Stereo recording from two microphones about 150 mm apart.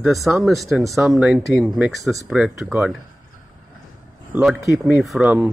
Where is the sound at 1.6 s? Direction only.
5° right (ahead or behind).